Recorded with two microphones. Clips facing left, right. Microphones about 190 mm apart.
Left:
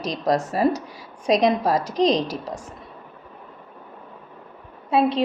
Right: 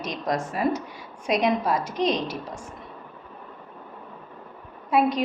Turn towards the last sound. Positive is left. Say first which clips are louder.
# left 2 dB
turn(degrees=30)  # may be behind; listen again after turning